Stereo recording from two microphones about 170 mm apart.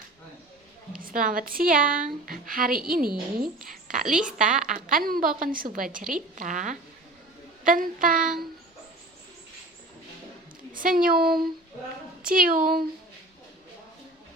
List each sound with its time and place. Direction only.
0.9 s a woman's voice: 55° right (ahead or behind)
4.0 s a woman's voice: 5° right (ahead or behind)
4.7 s a woman's voice: 55° right (ahead or behind)
10.8 s a woman's voice: 55° right (ahead or behind)